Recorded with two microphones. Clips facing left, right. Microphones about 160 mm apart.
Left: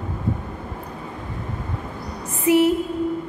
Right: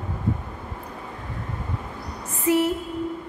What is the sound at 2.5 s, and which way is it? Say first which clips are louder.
Speech: left 4 dB; 15° left (ahead or behind).